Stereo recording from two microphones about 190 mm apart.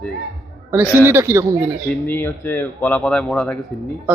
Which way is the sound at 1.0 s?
10° right (ahead or behind).